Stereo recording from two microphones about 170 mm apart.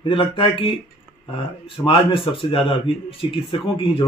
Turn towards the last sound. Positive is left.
turn(degrees=30)  # may be behind; listen again after turning